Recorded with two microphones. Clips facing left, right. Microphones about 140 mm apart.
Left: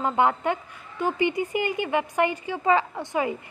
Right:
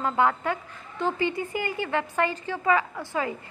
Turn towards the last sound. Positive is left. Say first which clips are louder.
# left 3 dB
turn(degrees=20)  # may be behind; listen again after turning